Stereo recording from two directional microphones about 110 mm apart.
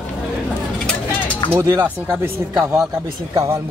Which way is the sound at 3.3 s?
25° right (ahead or behind).